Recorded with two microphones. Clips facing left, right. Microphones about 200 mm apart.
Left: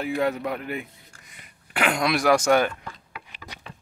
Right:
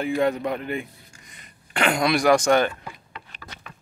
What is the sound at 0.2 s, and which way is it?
A man's voice, 5° left (ahead or behind).